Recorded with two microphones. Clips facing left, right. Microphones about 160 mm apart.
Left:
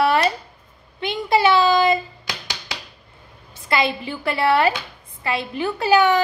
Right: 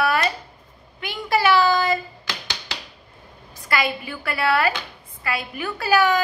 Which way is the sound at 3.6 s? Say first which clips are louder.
Left 3 dB; 25° left (ahead or behind).